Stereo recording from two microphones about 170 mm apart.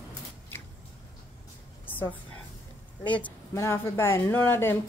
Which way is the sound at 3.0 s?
10° left (ahead or behind).